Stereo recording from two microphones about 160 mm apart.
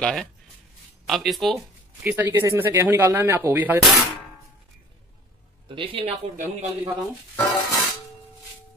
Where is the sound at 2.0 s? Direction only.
10° right (ahead or behind).